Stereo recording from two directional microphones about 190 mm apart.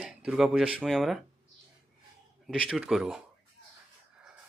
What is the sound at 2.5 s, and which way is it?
Speech, 5° right (ahead or behind).